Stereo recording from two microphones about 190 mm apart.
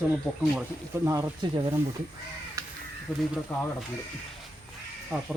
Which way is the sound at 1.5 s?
25° right (ahead or behind).